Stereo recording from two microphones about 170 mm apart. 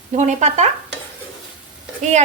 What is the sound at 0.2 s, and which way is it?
Speech, 45° right (ahead or behind).